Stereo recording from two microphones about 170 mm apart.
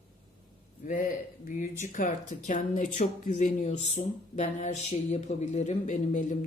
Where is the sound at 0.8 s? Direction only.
50° left (ahead or behind).